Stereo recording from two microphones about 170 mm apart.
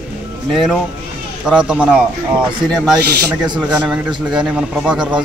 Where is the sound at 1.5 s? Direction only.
5° right (ahead or behind).